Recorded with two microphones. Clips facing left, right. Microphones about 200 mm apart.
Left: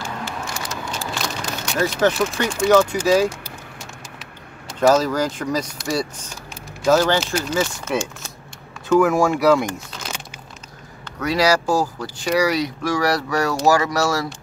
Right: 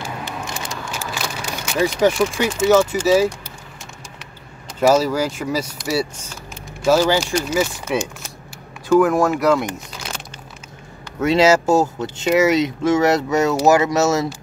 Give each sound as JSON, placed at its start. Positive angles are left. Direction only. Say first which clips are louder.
{"t": 0.7, "sound": "vehicle", "louder": "even", "side_deg": -10}
{"t": 1.8, "sound": "speech", "louder": "right 2 dB", "side_deg": -10}
{"t": 4.7, "sound": "speech", "louder": "right 1 dB", "side_deg": -10}
{"t": 8.8, "sound": "speech", "louder": "right 1 dB", "side_deg": 0}
{"t": 11.1, "sound": "speech", "louder": "right 4 dB", "side_deg": -25}